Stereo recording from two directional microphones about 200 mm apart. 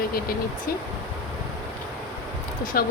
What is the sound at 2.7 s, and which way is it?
Speech, 50° left (ahead or behind).